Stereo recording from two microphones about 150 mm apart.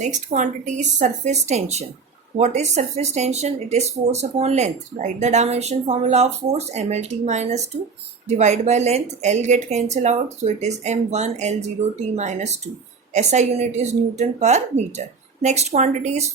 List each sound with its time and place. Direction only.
0.0 s a woman's voice: 55° right (ahead or behind)